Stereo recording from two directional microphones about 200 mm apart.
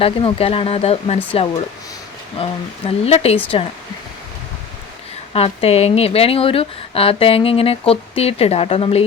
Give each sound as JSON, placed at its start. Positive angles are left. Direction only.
{"t": 0.0, "sound": "speech", "side_deg": 25}
{"t": 5.3, "sound": "speech", "side_deg": 30}